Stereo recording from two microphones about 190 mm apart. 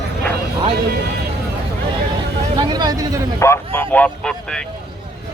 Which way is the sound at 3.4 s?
10° left (ahead or behind).